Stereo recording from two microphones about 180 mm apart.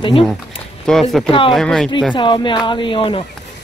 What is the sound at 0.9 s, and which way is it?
Speech, 5° left (ahead or behind).